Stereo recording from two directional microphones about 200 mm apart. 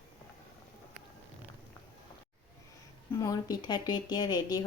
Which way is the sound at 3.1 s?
20° left (ahead or behind).